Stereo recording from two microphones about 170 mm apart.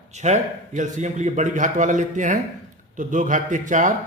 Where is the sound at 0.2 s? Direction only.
45° right (ahead or behind).